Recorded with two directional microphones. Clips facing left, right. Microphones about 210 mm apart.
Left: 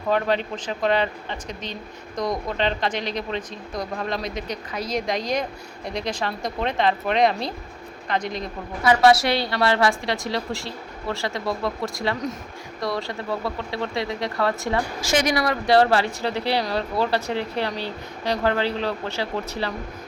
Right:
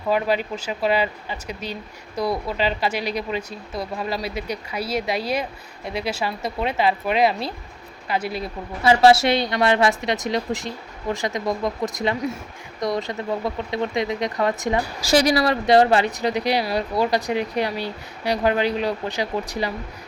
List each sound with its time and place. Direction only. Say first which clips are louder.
0.1 s speech: right 1 dB; 10° right (ahead or behind)
8.8 s speech: right 2 dB; 25° right (ahead or behind)
15.0 s speech: right 5 dB; 35° right (ahead or behind); by 19.7 s 15° right (ahead or behind)